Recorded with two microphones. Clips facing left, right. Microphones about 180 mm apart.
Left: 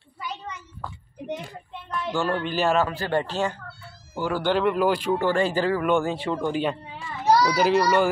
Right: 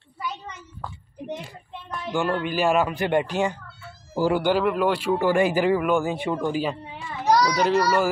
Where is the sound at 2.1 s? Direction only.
15° right (ahead or behind).